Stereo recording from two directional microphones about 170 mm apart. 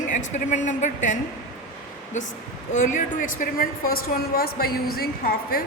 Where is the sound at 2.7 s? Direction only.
50° left (ahead or behind).